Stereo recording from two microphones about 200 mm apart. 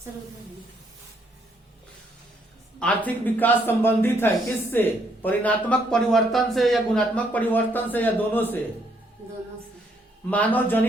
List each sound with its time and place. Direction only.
2.7 s speech: 5° left (ahead or behind)
10.2 s speech: 5° left (ahead or behind)